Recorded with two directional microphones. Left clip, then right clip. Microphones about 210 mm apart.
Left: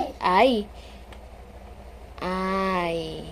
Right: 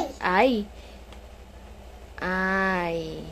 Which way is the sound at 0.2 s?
5° right (ahead or behind).